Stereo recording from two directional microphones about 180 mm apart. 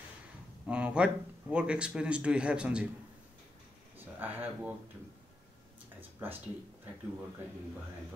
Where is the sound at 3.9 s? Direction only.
10° right (ahead or behind).